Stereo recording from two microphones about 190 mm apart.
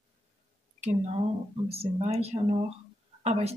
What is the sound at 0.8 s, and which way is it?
Speech, 40° right (ahead or behind).